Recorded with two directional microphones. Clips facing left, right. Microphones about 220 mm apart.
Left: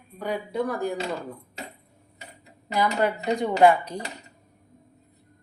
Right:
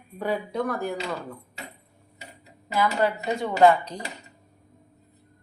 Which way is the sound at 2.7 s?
15° left (ahead or behind).